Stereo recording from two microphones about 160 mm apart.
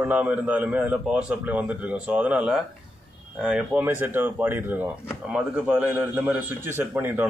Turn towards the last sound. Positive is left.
turn(degrees=-15)  # may be behind; listen again after turning